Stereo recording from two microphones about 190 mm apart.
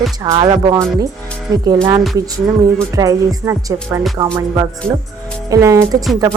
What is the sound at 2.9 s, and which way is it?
Speech, 15° right (ahead or behind).